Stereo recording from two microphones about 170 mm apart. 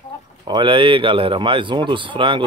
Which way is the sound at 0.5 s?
30° right (ahead or behind).